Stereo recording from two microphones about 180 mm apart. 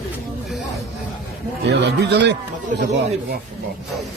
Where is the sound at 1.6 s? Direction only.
70° right (ahead or behind).